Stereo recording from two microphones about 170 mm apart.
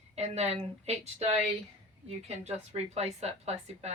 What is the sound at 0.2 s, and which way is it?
Speech, 40° right (ahead or behind).